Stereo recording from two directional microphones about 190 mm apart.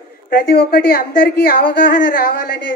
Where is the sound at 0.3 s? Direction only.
55° left (ahead or behind).